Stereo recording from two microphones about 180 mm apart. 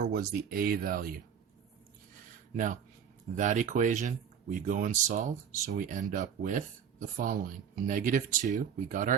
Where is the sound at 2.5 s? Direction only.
45° right (ahead or behind).